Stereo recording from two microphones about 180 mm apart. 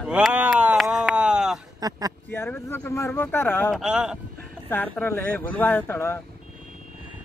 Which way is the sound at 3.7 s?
5° right (ahead or behind).